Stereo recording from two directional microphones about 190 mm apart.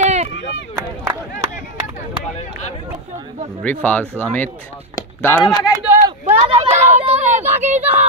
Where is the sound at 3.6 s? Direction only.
10° left (ahead or behind).